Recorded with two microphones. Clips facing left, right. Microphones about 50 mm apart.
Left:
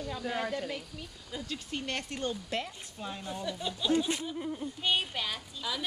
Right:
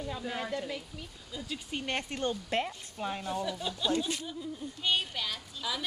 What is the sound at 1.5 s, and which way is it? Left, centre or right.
Speech, centre.